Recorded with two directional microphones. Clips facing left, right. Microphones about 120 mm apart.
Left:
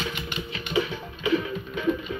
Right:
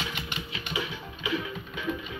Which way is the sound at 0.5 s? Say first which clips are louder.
Left 8 dB; 45° left (ahead or behind).